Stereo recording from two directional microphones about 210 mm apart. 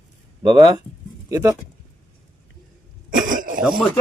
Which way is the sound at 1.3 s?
15° right (ahead or behind).